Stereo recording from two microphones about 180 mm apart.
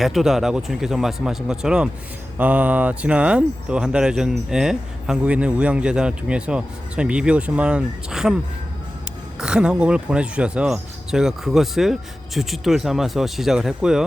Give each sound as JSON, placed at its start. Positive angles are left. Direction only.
{"t": 0.0, "sound": "speech", "side_deg": 0}
{"t": 9.4, "sound": "speech", "side_deg": -5}